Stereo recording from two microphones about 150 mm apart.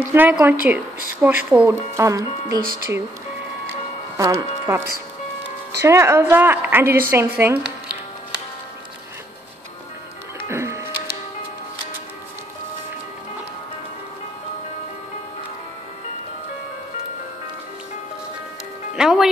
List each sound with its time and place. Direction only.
0.1 s a woman's voice: 15° right (ahead or behind)
4.2 s a woman's voice: 20° right (ahead or behind)
10.5 s music: 20° right (ahead or behind)
18.9 s music: centre (ahead or behind)